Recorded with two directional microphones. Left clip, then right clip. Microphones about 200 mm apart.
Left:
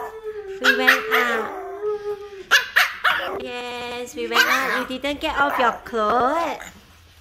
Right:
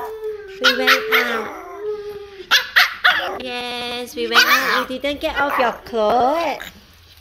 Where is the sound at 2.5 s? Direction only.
20° left (ahead or behind).